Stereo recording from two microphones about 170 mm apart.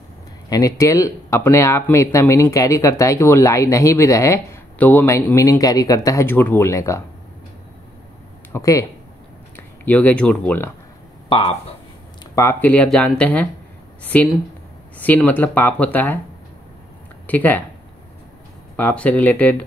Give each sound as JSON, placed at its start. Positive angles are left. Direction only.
{"t": 0.5, "sound": "speech", "side_deg": 20}
{"t": 8.5, "sound": "speech", "side_deg": 20}
{"t": 11.2, "sound": "speech", "side_deg": 30}
{"t": 12.4, "sound": "speech", "side_deg": 15}
{"t": 17.3, "sound": "speech", "side_deg": 10}
{"t": 18.8, "sound": "speech", "side_deg": 10}